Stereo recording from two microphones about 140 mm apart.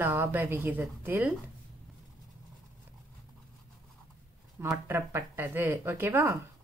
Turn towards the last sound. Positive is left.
turn(degrees=-15)  # may be behind; listen again after turning